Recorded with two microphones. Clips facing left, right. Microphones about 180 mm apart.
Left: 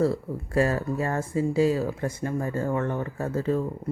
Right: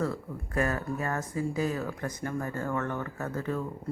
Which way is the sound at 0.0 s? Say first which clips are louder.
Left 7 dB; 30° left (ahead or behind).